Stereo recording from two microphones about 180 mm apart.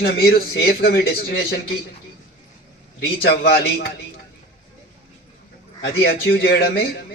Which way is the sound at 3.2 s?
60° left (ahead or behind).